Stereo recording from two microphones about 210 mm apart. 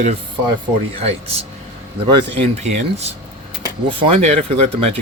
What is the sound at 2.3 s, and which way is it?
Speech, 30° right (ahead or behind).